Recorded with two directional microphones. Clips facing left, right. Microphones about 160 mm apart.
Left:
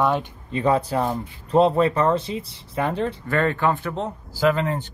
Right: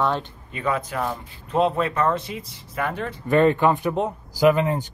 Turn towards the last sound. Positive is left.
turn(degrees=-15)  # may be behind; listen again after turning